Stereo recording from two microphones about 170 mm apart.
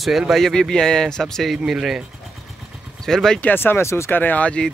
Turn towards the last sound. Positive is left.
turn(degrees=5)  # may be behind; listen again after turning